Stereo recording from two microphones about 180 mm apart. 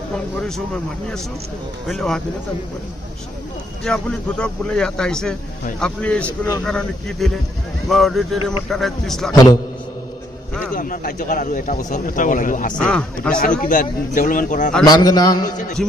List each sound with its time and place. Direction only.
1.9 s a man's voice: 5° left (ahead or behind)
3.8 s a man's voice: 5° left (ahead or behind)
9.3 s a man's voice: 20° left (ahead or behind)
10.8 s speech: 50° left (ahead or behind)
12.8 s a man's voice: 5° left (ahead or behind)
13.6 s speech: 45° left (ahead or behind)
14.8 s a man's voice: 20° left (ahead or behind)